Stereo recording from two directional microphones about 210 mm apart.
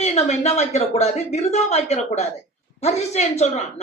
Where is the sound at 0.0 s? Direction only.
30° left (ahead or behind).